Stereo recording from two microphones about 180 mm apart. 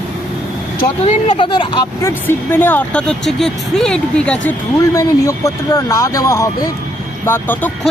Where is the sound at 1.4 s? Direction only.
25° left (ahead or behind).